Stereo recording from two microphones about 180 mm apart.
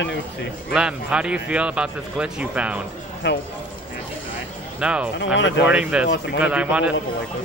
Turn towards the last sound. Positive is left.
turn(degrees=-5)  # may be behind; listen again after turning